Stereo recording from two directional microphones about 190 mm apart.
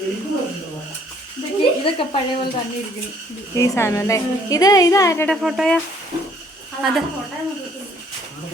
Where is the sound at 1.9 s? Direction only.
25° left (ahead or behind).